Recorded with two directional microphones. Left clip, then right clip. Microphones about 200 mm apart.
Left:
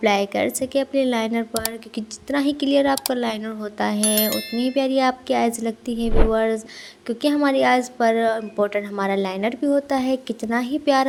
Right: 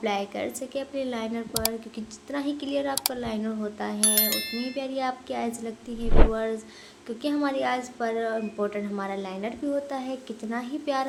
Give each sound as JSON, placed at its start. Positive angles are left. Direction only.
{"t": 0.0, "sound": "a woman's voice", "side_deg": 40}
{"t": 4.0, "sound": "speech", "side_deg": 0}
{"t": 4.6, "sound": "a woman's voice", "side_deg": 40}
{"t": 6.1, "sound": "speech", "side_deg": 0}
{"t": 6.3, "sound": "a woman's voice", "side_deg": 40}